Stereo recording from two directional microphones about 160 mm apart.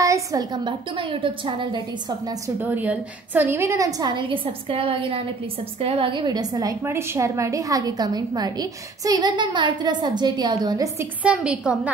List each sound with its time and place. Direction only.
0.0 s a woman's voice: 20° right (ahead or behind)
2.6 s a woman's voice: 10° right (ahead or behind)
11.2 s a woman's voice: 5° right (ahead or behind)